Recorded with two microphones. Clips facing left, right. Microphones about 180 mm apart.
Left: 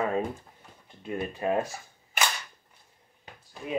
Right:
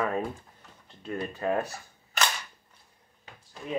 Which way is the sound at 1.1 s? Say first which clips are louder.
Left 1 dB; 20° left (ahead or behind).